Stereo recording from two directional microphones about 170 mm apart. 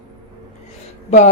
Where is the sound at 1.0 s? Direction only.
45° left (ahead or behind).